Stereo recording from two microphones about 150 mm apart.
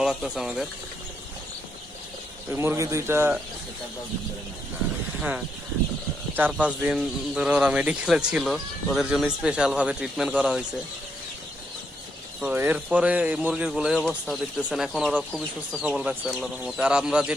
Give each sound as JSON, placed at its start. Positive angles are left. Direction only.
{"t": 0.0, "sound": "speech", "side_deg": -5}
{"t": 2.5, "sound": "speech", "side_deg": -15}
{"t": 6.3, "sound": "speech", "side_deg": -10}
{"t": 12.4, "sound": "speech", "side_deg": -10}